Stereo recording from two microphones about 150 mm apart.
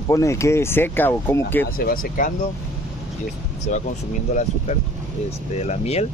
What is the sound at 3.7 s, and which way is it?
Speech, 55° left (ahead or behind).